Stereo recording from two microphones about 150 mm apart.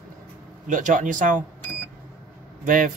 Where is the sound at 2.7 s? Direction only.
65° right (ahead or behind).